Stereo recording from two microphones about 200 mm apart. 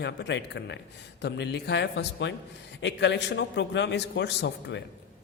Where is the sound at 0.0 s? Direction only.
60° left (ahead or behind).